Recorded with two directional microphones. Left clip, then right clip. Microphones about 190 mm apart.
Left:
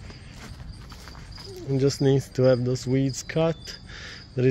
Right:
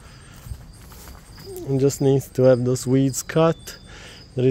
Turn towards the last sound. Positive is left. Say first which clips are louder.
# right 3 dB
turn(degrees=-20)  # may be behind; listen again after turning